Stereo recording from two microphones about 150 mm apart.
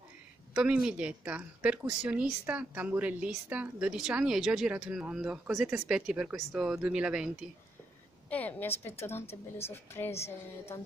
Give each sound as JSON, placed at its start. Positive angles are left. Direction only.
{"t": 0.6, "sound": "a woman's voice", "side_deg": -5}
{"t": 8.3, "sound": "a woman's voice", "side_deg": 10}
{"t": 9.7, "sound": "music", "side_deg": 15}